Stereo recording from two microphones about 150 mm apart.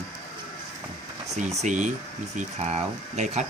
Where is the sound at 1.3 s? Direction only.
50° right (ahead or behind).